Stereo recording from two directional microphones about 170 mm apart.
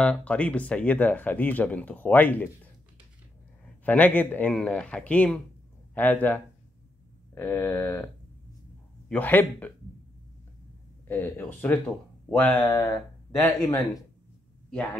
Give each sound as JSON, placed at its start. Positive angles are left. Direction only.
{"t": 0.0, "sound": "speech", "side_deg": 5}
{"t": 3.8, "sound": "speech", "side_deg": 10}
{"t": 9.1, "sound": "speech", "side_deg": 10}
{"t": 11.1, "sound": "speech", "side_deg": 10}
{"t": 12.6, "sound": "speech", "side_deg": 20}